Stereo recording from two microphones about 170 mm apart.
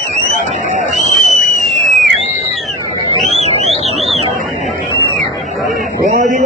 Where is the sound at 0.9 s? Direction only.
Centre (ahead or behind).